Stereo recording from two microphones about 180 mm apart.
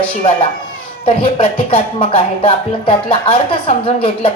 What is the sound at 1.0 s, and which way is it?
Speech, 30° left (ahead or behind).